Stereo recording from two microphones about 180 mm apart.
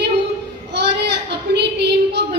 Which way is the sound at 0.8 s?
70° right (ahead or behind).